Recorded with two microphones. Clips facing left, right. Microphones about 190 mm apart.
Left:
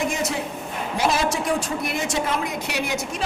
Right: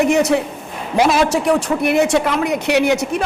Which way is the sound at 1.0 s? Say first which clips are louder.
Right 8 dB; 90° right.